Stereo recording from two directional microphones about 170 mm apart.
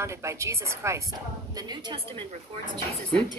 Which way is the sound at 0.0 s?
15° right (ahead or behind).